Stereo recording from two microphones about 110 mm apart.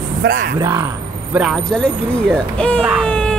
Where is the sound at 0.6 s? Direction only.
25° right (ahead or behind).